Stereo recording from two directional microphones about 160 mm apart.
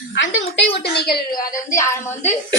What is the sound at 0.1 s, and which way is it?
A child's voice, 90° left.